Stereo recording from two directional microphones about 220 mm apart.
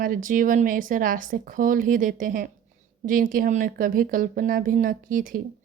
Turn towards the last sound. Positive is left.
turn(degrees=-40)  # may be behind; listen again after turning